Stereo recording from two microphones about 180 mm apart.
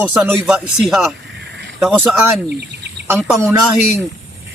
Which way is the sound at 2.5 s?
65° right (ahead or behind).